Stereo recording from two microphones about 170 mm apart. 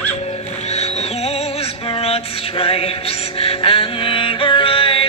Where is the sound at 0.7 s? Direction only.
40° left (ahead or behind).